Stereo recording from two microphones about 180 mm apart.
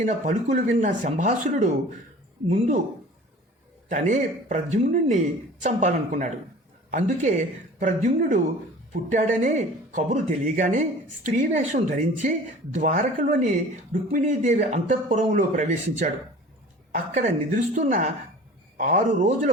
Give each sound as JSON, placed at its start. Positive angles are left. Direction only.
{"t": 0.0, "sound": "speech", "side_deg": -40}
{"t": 3.8, "sound": "speech", "side_deg": -45}
{"t": 17.2, "sound": "speech", "side_deg": -40}